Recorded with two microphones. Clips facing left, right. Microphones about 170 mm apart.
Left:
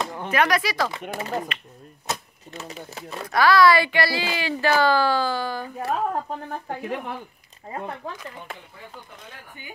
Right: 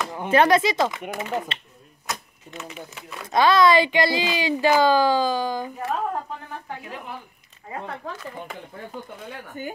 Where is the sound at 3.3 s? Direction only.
20° right (ahead or behind).